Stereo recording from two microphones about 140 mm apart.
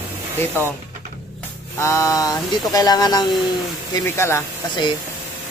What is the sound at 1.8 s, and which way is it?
Speech, 20° left (ahead or behind).